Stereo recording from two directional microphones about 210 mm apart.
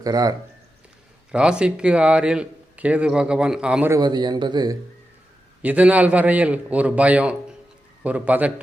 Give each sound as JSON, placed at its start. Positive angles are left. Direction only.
{"t": 0.0, "sound": "a man's voice", "side_deg": -15}
{"t": 1.3, "sound": "a man's voice", "side_deg": -5}
{"t": 5.6, "sound": "a man's voice", "side_deg": -5}